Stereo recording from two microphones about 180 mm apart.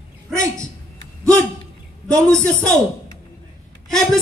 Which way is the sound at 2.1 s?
15° right (ahead or behind).